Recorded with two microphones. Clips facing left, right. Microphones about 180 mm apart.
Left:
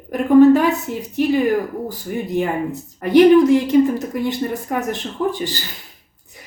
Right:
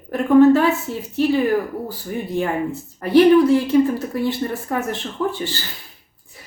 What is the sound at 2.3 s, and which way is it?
Speech, 15° left (ahead or behind).